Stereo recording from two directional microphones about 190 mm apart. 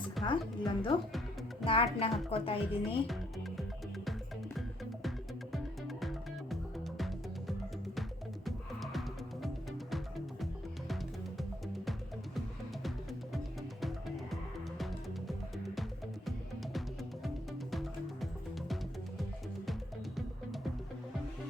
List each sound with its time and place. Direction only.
0.3 s a woman's voice: 25° left (ahead or behind)
3.1 s music: centre (ahead or behind)
6.0 s music: centre (ahead or behind)
14.8 s music: centre (ahead or behind)